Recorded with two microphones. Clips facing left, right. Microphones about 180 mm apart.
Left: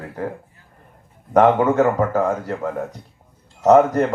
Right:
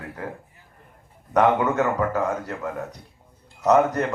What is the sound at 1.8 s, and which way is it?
Speech, 50° left (ahead or behind).